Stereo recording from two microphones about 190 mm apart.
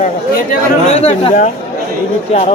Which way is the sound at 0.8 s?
35° left (ahead or behind).